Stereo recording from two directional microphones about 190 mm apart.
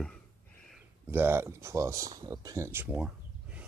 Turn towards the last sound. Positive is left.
turn(degrees=-10)  # may be behind; listen again after turning